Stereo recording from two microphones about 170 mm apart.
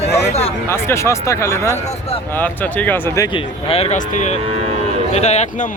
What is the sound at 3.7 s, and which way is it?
Speech, 40° left (ahead or behind).